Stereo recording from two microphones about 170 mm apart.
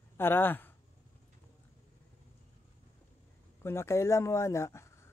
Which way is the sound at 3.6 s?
15° left (ahead or behind).